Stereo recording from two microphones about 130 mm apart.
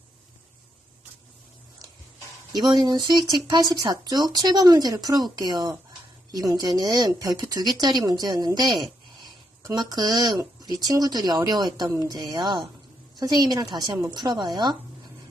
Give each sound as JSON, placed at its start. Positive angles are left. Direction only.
{"t": 2.5, "sound": "speech", "side_deg": -30}
{"t": 9.2, "sound": "a sound", "side_deg": -30}
{"t": 10.6, "sound": "speech", "side_deg": -30}